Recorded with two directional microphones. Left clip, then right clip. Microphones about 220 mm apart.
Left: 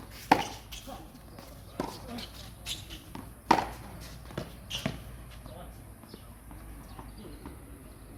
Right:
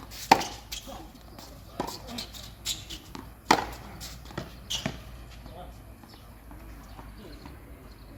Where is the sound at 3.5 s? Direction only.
50° right (ahead or behind).